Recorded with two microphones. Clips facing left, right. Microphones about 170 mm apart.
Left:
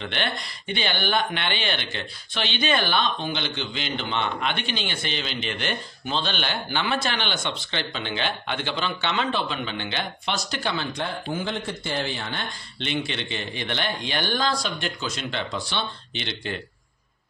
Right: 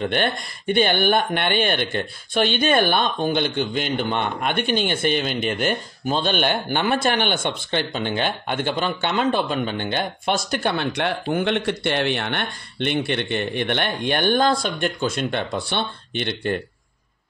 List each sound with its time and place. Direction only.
0.0 s speech: 50° right (ahead or behind)